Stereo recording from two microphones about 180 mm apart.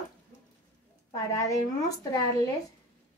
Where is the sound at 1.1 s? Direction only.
20° left (ahead or behind).